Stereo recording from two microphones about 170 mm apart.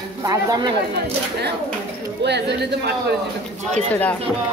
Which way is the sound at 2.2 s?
85° right.